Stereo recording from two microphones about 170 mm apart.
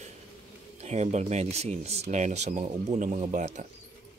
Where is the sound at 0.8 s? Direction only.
40° right (ahead or behind).